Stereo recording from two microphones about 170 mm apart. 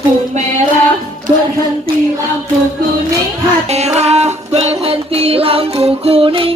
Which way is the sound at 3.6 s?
40° right (ahead or behind).